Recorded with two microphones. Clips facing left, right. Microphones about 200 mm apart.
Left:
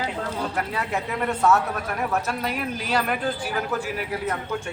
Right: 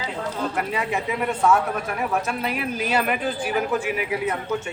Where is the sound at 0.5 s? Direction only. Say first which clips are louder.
Right 2 dB; 10° right (ahead or behind).